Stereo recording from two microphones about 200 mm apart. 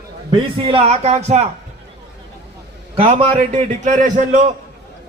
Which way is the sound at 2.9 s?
30° right (ahead or behind).